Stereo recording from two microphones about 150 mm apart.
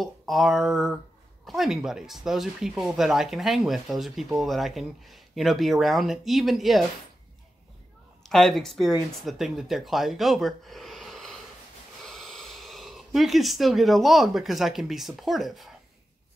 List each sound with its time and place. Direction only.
0.0 s speech: centre (ahead or behind)
8.2 s speech: centre (ahead or behind)